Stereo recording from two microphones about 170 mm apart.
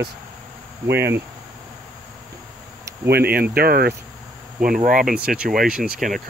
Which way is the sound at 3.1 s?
65° right (ahead or behind).